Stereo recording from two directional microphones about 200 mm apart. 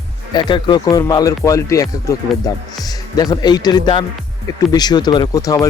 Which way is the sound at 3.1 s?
20° left (ahead or behind).